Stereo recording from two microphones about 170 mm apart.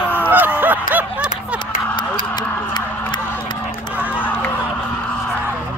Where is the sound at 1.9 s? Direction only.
25° left (ahead or behind).